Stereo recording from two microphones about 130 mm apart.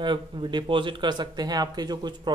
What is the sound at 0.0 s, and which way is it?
Speech, 35° right (ahead or behind).